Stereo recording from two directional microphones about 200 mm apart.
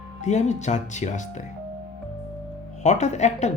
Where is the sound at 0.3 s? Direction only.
35° left (ahead or behind).